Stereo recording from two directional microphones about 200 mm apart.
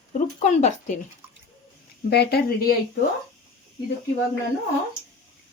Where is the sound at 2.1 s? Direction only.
55° left (ahead or behind).